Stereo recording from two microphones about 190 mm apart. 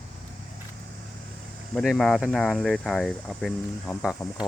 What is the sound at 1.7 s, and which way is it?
Speech, centre (ahead or behind).